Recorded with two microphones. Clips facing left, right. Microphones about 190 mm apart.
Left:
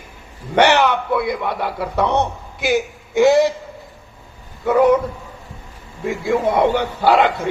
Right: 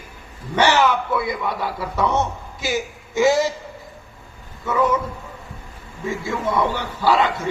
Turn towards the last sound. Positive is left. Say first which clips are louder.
# left 4 dB
turn(degrees=60)  # may be behind; listen again after turning